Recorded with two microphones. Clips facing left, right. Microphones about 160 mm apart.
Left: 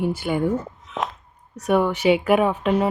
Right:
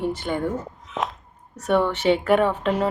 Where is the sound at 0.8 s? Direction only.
Centre (ahead or behind).